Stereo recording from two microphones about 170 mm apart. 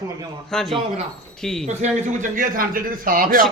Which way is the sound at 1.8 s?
45° right (ahead or behind).